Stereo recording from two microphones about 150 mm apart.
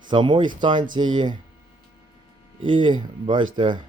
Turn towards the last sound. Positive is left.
turn(degrees=-30)  # may be behind; listen again after turning